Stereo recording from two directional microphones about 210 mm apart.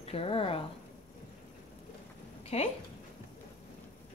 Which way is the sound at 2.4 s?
30° left (ahead or behind).